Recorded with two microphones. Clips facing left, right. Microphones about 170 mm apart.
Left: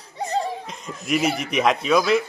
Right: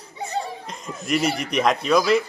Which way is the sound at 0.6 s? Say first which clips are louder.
Right 1 dB; centre (ahead or behind).